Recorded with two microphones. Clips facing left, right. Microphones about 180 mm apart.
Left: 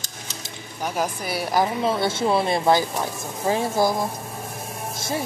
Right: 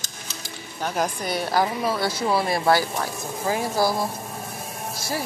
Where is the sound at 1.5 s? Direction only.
20° left (ahead or behind).